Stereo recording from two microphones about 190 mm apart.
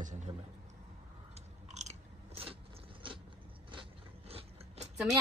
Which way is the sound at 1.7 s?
35° right (ahead or behind).